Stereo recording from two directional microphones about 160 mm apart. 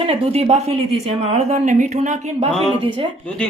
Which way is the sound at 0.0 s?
35° right (ahead or behind).